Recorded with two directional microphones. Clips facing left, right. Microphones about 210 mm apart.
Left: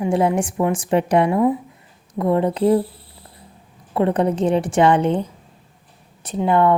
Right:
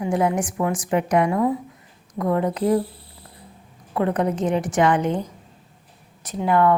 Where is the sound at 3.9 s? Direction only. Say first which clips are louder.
Left 3 dB; 30° left (ahead or behind).